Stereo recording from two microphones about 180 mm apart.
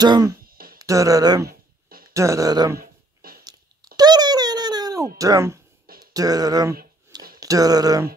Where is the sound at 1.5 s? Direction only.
55° right (ahead or behind).